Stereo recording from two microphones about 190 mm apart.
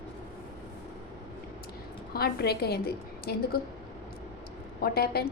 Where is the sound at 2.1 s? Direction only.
55° left (ahead or behind).